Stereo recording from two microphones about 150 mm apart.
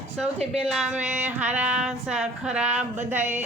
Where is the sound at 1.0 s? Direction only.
50° right (ahead or behind).